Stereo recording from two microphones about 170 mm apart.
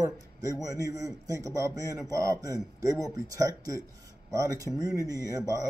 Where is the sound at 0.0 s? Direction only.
20° right (ahead or behind).